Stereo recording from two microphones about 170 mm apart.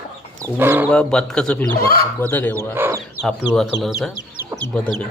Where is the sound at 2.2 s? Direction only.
10° left (ahead or behind).